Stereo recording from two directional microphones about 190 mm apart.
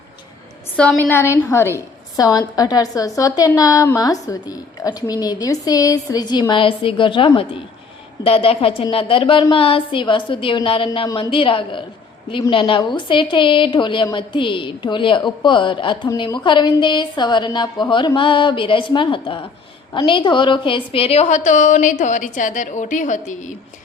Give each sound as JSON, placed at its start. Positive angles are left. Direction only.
{"t": 0.8, "sound": "a woman's voice", "side_deg": 5}